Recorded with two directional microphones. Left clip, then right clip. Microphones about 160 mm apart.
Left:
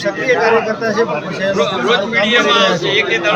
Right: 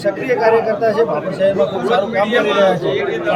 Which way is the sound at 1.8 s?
25° right (ahead or behind).